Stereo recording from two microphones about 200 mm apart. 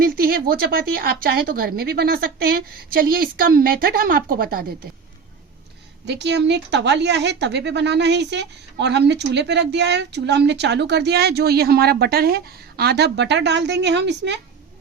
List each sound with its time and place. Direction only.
0.0 s a woman's voice: 50° right (ahead or behind)
6.1 s a woman's voice: 60° right (ahead or behind)